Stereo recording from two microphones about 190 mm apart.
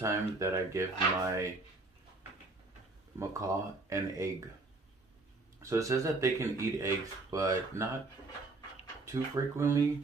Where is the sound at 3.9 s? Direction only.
15° right (ahead or behind).